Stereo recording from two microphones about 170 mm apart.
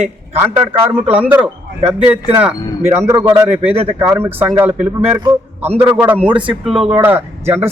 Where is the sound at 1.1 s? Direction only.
10° right (ahead or behind).